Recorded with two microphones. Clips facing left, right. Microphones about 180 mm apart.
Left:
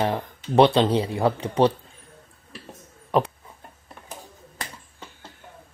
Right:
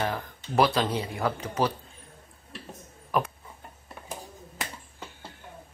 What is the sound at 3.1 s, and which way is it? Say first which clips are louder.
Speech: left 6 dB; 30° left (ahead or behind).